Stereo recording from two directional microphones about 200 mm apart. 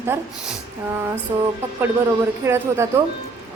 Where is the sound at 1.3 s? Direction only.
15° right (ahead or behind).